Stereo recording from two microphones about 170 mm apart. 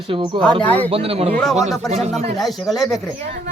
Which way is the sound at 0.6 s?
10° left (ahead or behind).